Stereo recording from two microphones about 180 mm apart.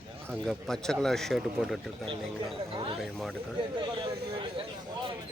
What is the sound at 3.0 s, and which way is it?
Speech, centre (ahead or behind).